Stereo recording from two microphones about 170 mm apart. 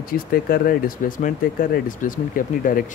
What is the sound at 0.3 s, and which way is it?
Speech, 60° left (ahead or behind).